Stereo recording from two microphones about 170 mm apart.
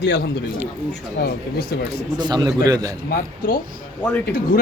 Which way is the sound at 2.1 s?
25° right (ahead or behind).